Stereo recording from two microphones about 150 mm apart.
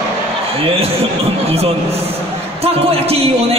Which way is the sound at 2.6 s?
40° right (ahead or behind).